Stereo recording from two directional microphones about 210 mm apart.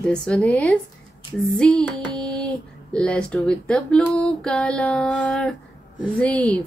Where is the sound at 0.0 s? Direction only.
5° left (ahead or behind).